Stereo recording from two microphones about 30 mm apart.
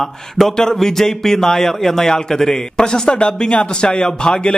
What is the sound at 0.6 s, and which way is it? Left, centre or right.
A man's voice, centre.